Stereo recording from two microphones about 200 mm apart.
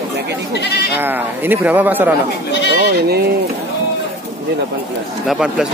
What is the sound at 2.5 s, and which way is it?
Bleat, 60° left (ahead or behind).